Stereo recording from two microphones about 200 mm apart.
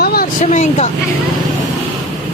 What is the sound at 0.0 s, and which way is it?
Vehicle, 50° left (ahead or behind).